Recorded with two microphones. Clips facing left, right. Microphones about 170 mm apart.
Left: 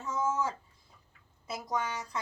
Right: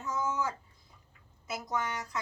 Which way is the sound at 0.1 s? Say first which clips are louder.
Left 2 dB; 30° left (ahead or behind).